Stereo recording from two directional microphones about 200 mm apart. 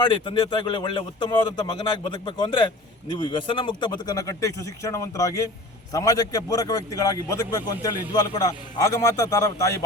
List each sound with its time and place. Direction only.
0.0 s speech: 20° left (ahead or behind)